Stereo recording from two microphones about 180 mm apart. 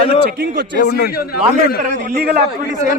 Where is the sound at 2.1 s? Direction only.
60° right (ahead or behind).